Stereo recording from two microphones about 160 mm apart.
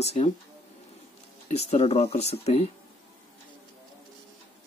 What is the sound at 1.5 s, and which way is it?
Speech, 40° left (ahead or behind).